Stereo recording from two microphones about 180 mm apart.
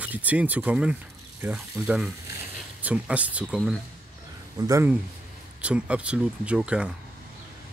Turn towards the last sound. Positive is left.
turn(degrees=-5)  # may be behind; listen again after turning